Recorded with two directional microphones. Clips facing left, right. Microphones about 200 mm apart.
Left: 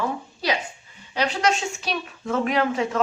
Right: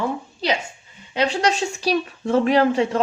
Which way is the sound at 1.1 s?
25° right (ahead or behind).